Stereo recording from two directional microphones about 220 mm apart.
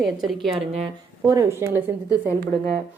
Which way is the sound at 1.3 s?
15° right (ahead or behind).